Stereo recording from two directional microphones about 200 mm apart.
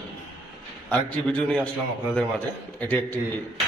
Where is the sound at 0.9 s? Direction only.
5° left (ahead or behind).